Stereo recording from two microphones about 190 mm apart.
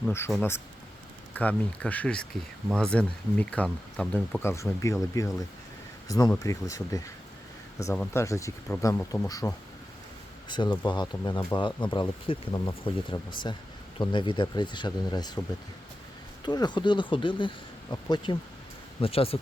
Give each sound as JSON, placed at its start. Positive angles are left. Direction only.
{"t": 0.3, "sound": "speech", "side_deg": 10}
{"t": 10.5, "sound": "speech", "side_deg": 25}
{"t": 16.5, "sound": "speech", "side_deg": 20}